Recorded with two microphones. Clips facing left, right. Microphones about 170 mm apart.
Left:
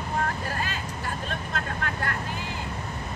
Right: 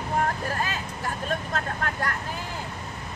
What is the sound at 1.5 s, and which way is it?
Vehicle, 40° right (ahead or behind).